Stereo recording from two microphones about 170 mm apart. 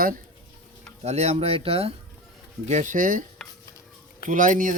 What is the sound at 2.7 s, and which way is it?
Speech, 50° right (ahead or behind).